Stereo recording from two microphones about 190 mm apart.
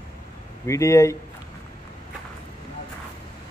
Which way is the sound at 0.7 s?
15° left (ahead or behind).